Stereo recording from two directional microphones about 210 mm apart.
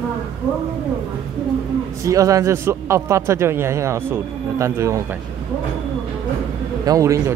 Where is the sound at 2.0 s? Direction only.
15° right (ahead or behind).